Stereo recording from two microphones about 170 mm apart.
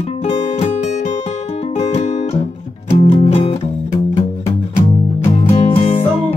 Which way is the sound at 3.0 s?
40° left (ahead or behind).